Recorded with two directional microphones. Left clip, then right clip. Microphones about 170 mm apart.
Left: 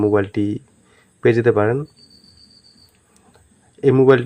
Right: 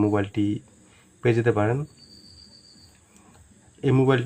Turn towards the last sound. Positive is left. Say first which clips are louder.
# left 9 dB
turn(degrees=30)  # may be behind; listen again after turning